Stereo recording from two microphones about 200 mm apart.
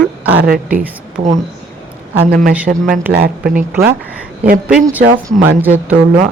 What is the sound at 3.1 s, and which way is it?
Speech, 50° right (ahead or behind).